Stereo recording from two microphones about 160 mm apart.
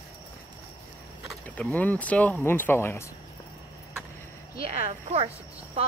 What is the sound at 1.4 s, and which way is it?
Speech, 10° left (ahead or behind).